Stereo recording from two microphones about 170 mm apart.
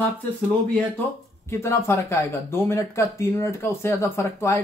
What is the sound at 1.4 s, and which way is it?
Speech, 15° left (ahead or behind).